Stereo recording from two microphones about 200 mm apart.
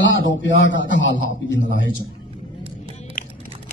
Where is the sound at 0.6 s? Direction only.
70° left (ahead or behind).